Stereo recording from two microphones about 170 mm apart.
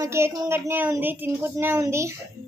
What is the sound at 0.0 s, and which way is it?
Speech, 15° right (ahead or behind).